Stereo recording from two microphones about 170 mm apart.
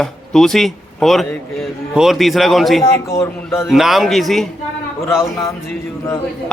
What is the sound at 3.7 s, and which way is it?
Speech, centre (ahead or behind).